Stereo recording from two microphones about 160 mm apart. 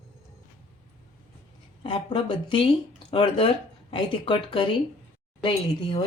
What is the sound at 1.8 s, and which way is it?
Speech, 30° left (ahead or behind).